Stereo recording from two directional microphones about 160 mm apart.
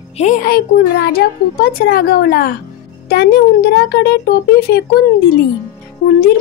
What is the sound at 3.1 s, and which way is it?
Speech, 80° left.